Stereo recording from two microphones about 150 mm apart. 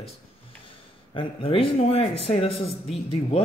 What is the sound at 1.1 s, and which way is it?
A man's voice, 35° left (ahead or behind).